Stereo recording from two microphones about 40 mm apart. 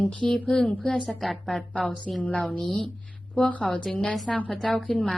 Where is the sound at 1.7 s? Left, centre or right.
Left.